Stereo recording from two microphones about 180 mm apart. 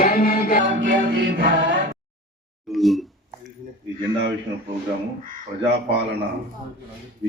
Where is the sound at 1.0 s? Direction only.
85° right.